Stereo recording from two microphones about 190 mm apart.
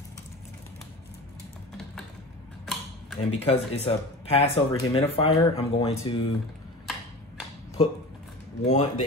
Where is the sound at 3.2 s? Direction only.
30° left (ahead or behind).